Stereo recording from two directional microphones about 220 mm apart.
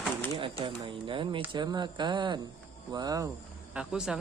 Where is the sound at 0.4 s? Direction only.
20° right (ahead or behind).